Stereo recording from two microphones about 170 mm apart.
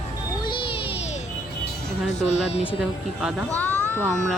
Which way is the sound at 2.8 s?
5° right (ahead or behind).